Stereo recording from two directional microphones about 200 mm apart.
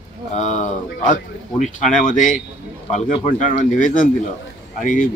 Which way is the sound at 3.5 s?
40° left (ahead or behind).